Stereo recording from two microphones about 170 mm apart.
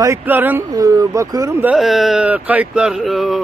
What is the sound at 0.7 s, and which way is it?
Speech, 20° right (ahead or behind).